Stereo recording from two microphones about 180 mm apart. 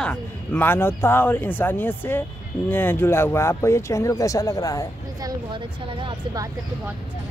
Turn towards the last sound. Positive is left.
turn(degrees=-25)  # may be behind; listen again after turning